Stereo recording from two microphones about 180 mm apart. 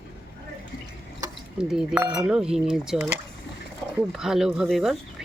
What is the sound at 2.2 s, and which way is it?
Speech, 5° right (ahead or behind).